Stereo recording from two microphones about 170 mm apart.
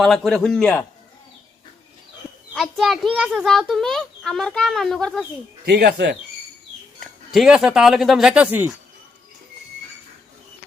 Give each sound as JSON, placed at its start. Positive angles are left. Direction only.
{"t": 0.0, "sound": "a child's voice", "side_deg": 0}
{"t": 2.6, "sound": "a child's voice", "side_deg": 0}
{"t": 5.6, "sound": "speech", "side_deg": -75}
{"t": 7.0, "sound": "a child's voice", "side_deg": 0}